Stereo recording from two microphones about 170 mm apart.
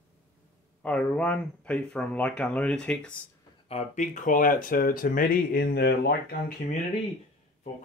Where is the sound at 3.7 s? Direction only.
40° left (ahead or behind); by 6.4 s 70° left (ahead or behind).